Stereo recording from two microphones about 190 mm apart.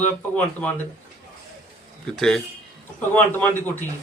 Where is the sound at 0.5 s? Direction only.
10° left (ahead or behind).